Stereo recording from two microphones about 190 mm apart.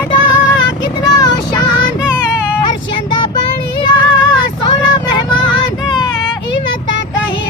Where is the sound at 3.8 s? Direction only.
25° left (ahead or behind).